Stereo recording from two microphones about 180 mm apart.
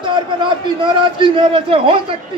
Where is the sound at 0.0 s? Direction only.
25° right (ahead or behind).